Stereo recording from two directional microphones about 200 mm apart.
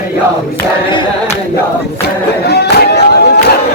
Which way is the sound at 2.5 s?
55° left (ahead or behind).